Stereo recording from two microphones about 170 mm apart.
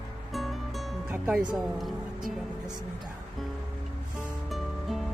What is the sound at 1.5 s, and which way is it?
Speech, centre (ahead or behind).